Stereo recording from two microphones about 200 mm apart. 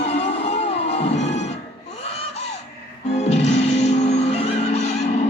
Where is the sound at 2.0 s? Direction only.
30° left (ahead or behind).